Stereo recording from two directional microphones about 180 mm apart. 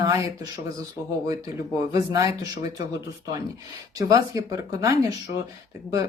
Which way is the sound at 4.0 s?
20° right (ahead or behind).